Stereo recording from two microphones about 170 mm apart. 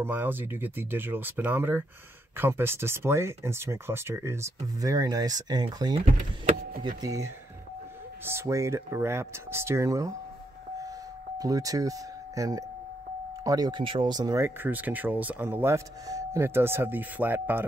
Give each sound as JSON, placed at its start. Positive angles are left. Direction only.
{"t": 0.0, "sound": "speech", "side_deg": -10}
{"t": 7.0, "sound": "speech", "side_deg": -20}
{"t": 11.3, "sound": "speech", "side_deg": -20}